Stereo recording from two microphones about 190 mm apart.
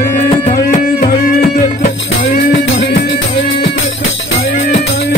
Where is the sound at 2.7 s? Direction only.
70° left (ahead or behind).